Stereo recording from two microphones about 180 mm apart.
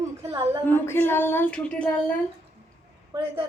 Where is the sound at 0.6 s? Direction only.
10° left (ahead or behind).